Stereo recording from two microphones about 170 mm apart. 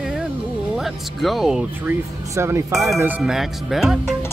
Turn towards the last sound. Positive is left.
turn(degrees=0)  # may be behind; listen again after turning